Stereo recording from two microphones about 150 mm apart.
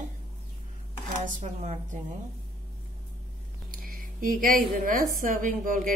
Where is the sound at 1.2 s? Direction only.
55° right (ahead or behind).